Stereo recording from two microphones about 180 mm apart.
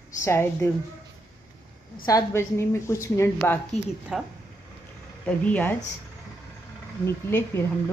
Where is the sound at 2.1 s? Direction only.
15° left (ahead or behind).